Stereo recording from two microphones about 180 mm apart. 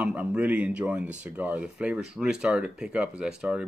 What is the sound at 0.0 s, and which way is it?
Speech, 10° right (ahead or behind).